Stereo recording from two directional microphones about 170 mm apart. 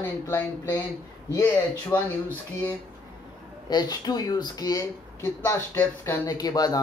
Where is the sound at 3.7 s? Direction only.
25° left (ahead or behind).